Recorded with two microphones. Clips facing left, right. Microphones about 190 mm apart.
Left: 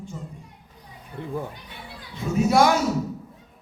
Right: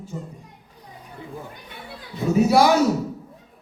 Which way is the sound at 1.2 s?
60° left (ahead or behind).